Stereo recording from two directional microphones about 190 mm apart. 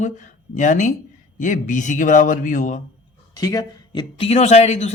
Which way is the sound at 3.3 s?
20° left (ahead or behind).